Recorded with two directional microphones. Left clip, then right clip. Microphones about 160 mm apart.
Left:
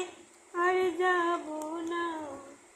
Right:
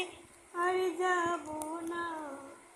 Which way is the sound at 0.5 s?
15° left (ahead or behind).